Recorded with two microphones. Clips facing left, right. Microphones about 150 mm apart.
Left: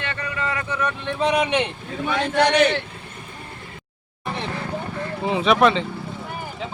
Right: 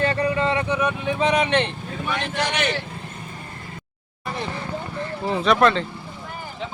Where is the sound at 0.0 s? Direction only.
35° right (ahead or behind); by 1.1 s 10° right (ahead or behind).